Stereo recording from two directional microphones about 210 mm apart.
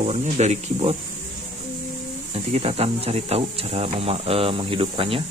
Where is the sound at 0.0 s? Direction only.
30° right (ahead or behind).